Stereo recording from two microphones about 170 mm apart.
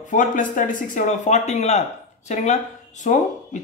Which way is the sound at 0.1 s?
50° left (ahead or behind).